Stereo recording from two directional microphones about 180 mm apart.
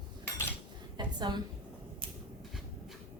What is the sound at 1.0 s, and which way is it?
Speech, 25° right (ahead or behind).